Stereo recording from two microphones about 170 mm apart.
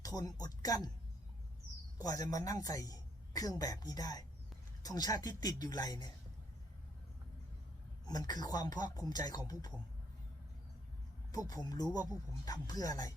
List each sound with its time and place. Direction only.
0.0 s a man's voice: 20° left (ahead or behind)
2.0 s a man's voice: 20° left (ahead or behind)
8.0 s a man's voice: 20° left (ahead or behind)
11.3 s a man's voice: 20° left (ahead or behind)